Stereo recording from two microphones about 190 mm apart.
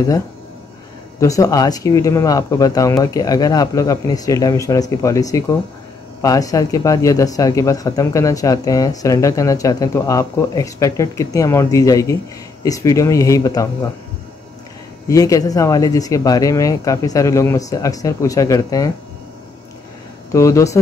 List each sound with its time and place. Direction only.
1.2 s speech: 20° left (ahead or behind)
15.0 s speech: 20° left (ahead or behind)
20.3 s speech: 15° left (ahead or behind)